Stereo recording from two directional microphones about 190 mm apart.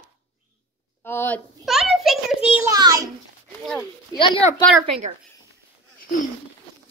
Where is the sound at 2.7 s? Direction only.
20° right (ahead or behind).